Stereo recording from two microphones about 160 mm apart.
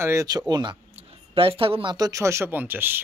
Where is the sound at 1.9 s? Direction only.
20° right (ahead or behind).